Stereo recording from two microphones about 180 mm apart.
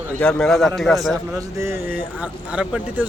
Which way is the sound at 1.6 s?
15° right (ahead or behind).